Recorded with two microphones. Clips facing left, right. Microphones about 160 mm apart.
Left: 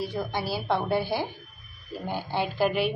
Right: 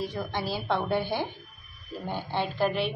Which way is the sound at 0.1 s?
10° left (ahead or behind).